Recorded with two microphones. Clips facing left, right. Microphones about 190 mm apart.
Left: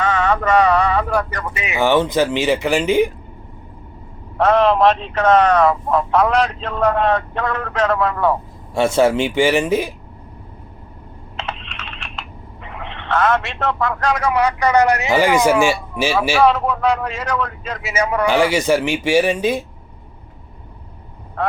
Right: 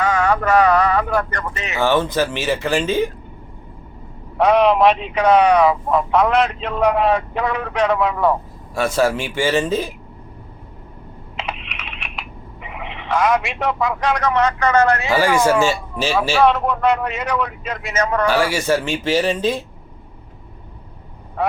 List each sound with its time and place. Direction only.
0.0 s speech: 10° right (ahead or behind); by 3.1 s 15° left (ahead or behind)
4.6 s speech: centre (ahead or behind)
8.7 s a man's voice: 25° left (ahead or behind)
11.3 s computer keyboard: 5° right (ahead or behind)
12.6 s speech: 5° right (ahead or behind)
14.2 s a man's voice: 10° left (ahead or behind); by 17.8 s 10° right (ahead or behind)
17.8 s a man's voice: 10° left (ahead or behind)